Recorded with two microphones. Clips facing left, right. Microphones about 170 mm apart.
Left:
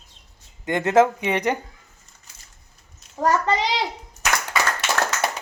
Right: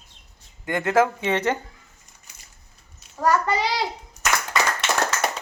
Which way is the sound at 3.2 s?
20° left (ahead or behind).